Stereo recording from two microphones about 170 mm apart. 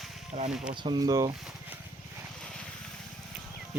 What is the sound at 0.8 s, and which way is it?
Speech, 25° right (ahead or behind).